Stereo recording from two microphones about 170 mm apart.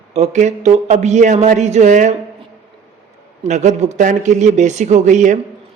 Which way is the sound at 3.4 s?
45° right (ahead or behind).